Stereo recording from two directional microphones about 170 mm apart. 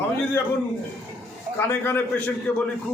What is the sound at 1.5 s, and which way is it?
Speech, 15° left (ahead or behind).